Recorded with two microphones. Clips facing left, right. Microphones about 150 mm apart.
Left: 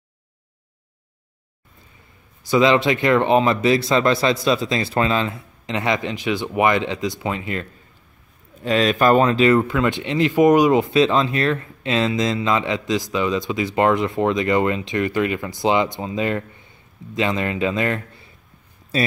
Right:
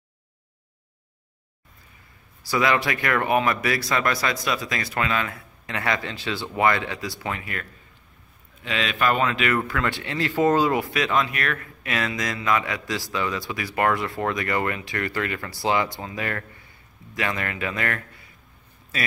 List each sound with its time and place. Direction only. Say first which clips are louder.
2.4 s speech: left 7 dB; 20° left (ahead or behind)
8.6 s speech: left 8 dB; 40° left (ahead or behind)